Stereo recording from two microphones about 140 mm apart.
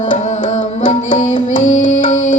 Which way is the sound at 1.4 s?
65° left (ahead or behind).